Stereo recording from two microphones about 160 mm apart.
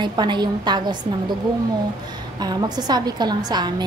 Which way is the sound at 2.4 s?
25° right (ahead or behind).